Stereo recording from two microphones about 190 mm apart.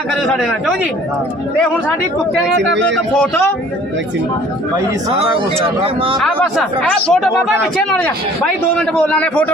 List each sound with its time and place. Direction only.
0.2 s speech: centre (ahead or behind)
2.6 s speech: 70° right (ahead or behind)
5.8 s a man's voice: 30° right (ahead or behind)
6.1 s speech: centre (ahead or behind)